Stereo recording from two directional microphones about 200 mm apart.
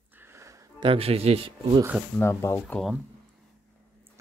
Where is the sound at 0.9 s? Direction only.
30° right (ahead or behind).